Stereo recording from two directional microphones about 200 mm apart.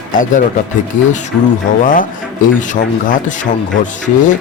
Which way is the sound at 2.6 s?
40° left (ahead or behind).